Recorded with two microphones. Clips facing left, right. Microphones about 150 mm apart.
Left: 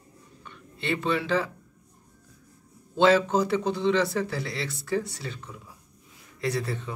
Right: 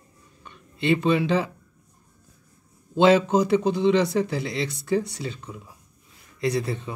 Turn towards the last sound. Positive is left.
turn(degrees=-15)  # may be behind; listen again after turning